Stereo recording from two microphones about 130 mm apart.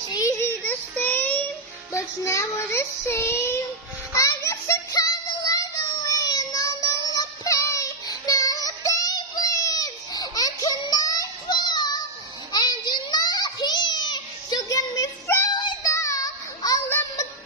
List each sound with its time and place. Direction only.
0.1 s child singing: 25° left (ahead or behind)
12.5 s a sound: 35° left (ahead or behind)
15.5 s child singing: 35° left (ahead or behind)
15.9 s child singing: 25° left (ahead or behind)